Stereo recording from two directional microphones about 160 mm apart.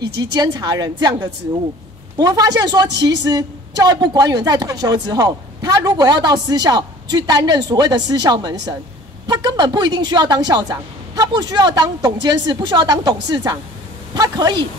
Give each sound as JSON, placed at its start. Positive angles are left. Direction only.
{"t": 0.2, "sound": "a woman's voice", "side_deg": -25}